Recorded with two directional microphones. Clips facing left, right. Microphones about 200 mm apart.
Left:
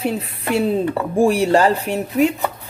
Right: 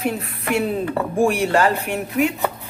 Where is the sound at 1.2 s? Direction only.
35° left (ahead or behind).